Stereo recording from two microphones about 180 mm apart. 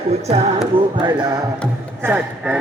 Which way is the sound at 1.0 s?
25° right (ahead or behind).